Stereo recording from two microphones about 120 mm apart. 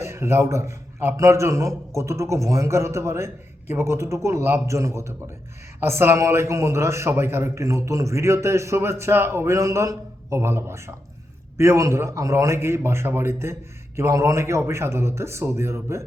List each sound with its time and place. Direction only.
0.0 s a man's voice: 20° right (ahead or behind)